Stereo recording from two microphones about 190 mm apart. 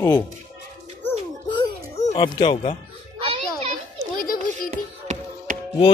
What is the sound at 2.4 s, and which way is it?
Speech, 25° left (ahead or behind).